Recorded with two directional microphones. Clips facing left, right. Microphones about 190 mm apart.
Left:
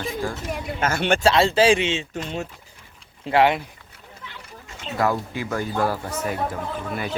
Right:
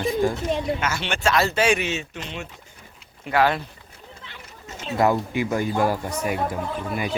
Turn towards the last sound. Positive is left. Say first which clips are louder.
# right 1 dB
turn(degrees=-10)  # may be behind; listen again after turning